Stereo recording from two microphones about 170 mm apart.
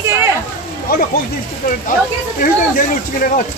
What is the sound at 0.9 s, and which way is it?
Speech, 60° left (ahead or behind).